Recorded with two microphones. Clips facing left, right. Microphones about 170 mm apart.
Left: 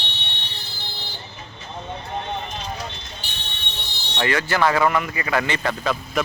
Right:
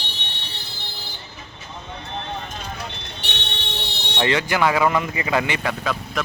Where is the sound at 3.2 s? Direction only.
70° right (ahead or behind).